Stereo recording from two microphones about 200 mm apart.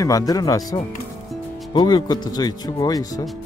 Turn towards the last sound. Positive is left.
turn(degrees=20)  # may be behind; listen again after turning